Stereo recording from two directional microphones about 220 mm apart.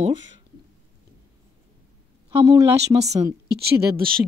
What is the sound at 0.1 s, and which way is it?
Speech, 60° right (ahead or behind).